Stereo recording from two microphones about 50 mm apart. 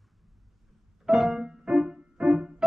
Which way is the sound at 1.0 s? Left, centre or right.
Centre.